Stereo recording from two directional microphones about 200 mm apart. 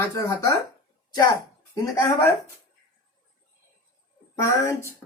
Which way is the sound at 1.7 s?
15° left (ahead or behind).